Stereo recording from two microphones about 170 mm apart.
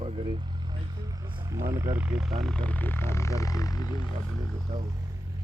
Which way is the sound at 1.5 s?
15° right (ahead or behind).